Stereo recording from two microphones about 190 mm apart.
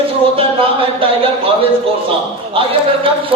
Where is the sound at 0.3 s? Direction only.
30° right (ahead or behind).